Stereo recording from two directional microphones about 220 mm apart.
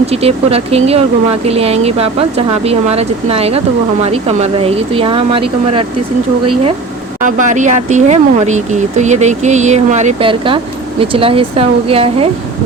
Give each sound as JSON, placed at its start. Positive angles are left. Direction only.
{"t": 0.0, "sound": "speech", "side_deg": -25}
{"t": 7.2, "sound": "speech", "side_deg": -35}